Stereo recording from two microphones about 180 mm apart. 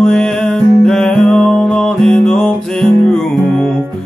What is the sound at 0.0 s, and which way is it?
Music, 5° left (ahead or behind).